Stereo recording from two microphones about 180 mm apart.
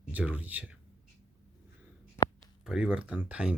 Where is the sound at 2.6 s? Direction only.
5° right (ahead or behind).